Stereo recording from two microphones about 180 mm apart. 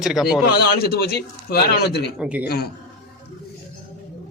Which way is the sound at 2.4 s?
60° left (ahead or behind).